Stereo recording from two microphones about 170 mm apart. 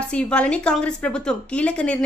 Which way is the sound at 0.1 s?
5° left (ahead or behind).